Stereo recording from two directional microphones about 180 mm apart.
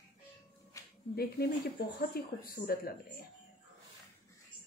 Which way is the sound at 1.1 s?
60° left (ahead or behind).